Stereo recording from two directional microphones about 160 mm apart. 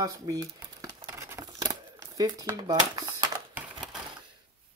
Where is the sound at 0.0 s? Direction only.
25° right (ahead or behind).